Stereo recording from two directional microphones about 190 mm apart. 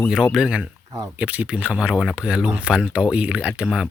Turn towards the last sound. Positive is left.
turn(degrees=-5)  # may be behind; listen again after turning